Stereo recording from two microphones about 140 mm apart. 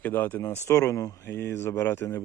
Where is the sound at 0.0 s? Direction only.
15° left (ahead or behind).